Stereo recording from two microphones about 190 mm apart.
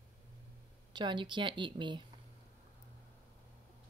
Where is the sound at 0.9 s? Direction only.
25° right (ahead or behind).